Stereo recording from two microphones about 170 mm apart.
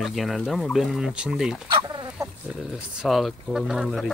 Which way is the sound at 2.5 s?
Centre (ahead or behind).